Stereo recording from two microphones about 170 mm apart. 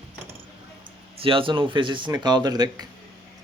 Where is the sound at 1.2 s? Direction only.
30° right (ahead or behind).